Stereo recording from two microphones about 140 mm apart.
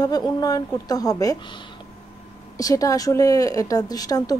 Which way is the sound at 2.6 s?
25° left (ahead or behind).